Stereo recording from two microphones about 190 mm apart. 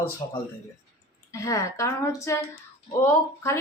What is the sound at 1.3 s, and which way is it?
A woman's voice, 15° left (ahead or behind).